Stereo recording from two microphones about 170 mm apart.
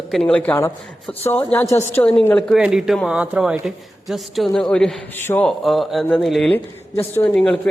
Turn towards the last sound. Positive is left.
turn(degrees=5)  # may be behind; listen again after turning